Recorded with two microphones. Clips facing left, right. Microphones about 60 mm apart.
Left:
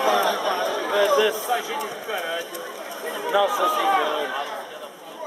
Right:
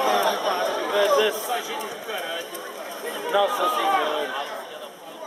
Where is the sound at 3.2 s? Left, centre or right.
Centre.